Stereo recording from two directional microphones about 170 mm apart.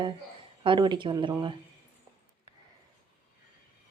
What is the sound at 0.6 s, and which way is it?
Speech, 30° right (ahead or behind).